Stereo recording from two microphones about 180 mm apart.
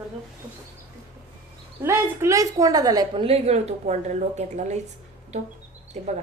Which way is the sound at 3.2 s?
35° right (ahead or behind).